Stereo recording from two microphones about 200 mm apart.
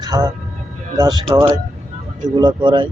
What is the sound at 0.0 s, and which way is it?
Speech, 20° right (ahead or behind).